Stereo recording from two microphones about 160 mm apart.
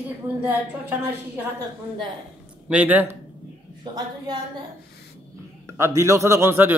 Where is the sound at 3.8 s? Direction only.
30° right (ahead or behind).